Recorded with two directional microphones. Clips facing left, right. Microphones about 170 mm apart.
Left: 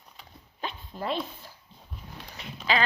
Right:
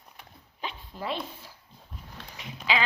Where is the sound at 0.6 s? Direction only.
45° left (ahead or behind).